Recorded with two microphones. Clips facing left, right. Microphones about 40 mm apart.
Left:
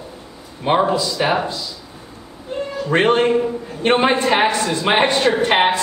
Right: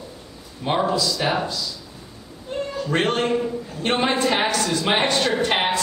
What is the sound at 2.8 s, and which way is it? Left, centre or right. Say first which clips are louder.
A woman's voice: left 7 dB; left.